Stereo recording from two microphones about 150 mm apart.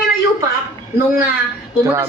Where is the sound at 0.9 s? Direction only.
15° right (ahead or behind).